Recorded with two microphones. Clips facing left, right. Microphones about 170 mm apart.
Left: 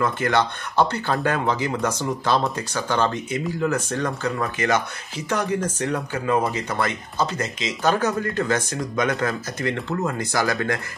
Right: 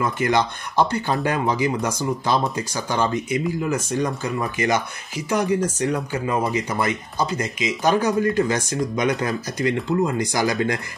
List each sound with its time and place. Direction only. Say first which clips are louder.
0.0 s speech: right 1 dB; 10° right (ahead or behind)